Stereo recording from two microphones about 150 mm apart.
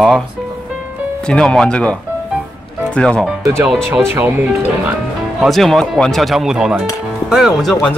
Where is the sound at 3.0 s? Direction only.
5° left (ahead or behind).